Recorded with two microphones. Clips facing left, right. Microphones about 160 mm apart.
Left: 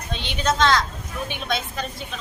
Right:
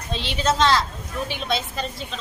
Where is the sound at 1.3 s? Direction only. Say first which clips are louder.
Even; 30° right (ahead or behind).